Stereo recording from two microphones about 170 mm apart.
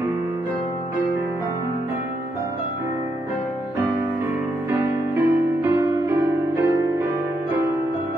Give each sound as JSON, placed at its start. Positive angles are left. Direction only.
{"t": 4.6, "sound": "music", "side_deg": -15}